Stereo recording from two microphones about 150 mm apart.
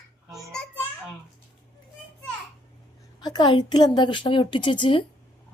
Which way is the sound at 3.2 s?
30° left (ahead or behind).